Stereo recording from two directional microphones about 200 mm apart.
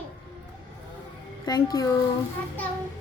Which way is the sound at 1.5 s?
20° left (ahead or behind).